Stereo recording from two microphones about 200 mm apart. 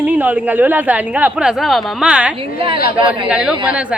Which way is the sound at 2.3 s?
25° right (ahead or behind).